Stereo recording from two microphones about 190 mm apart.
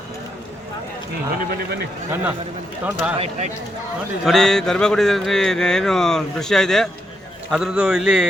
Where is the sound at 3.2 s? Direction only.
35° right (ahead or behind).